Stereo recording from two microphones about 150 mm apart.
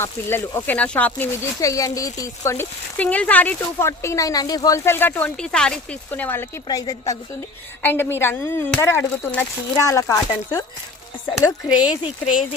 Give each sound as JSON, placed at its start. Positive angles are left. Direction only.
{"t": 0.0, "sound": "speech", "side_deg": 15}
{"t": 1.6, "sound": "speech", "side_deg": 20}
{"t": 6.7, "sound": "speech", "side_deg": 25}
{"t": 11.3, "sound": "speech", "side_deg": -5}